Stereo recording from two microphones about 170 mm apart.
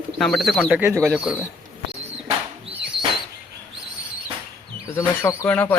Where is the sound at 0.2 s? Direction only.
Centre (ahead or behind).